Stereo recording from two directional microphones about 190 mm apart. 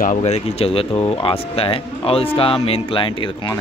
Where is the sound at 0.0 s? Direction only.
40° left (ahead or behind).